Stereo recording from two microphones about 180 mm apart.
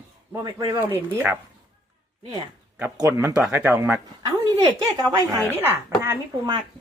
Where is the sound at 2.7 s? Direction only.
15° right (ahead or behind).